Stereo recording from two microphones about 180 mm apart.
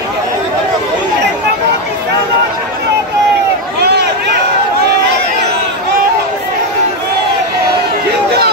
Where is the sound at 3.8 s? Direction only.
65° right (ahead or behind).